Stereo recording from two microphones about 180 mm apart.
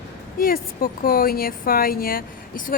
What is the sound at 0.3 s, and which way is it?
Speech, 50° left (ahead or behind).